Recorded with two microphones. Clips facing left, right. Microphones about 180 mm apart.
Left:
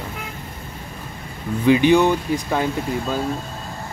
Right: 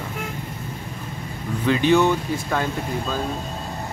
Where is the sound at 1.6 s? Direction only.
15° left (ahead or behind).